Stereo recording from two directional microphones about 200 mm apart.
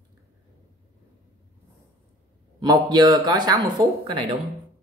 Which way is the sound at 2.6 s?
20° right (ahead or behind).